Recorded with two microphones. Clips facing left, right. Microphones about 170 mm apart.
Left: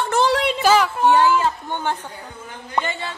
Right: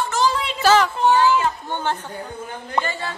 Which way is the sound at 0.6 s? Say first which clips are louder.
Right 3 dB; 10° left (ahead or behind).